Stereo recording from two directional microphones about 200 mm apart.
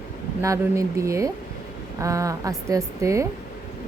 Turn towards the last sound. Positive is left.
turn(degrees=-15)  # may be behind; listen again after turning